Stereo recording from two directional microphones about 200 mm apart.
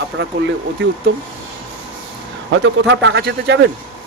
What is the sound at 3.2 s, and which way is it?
Speech, 55° right (ahead or behind).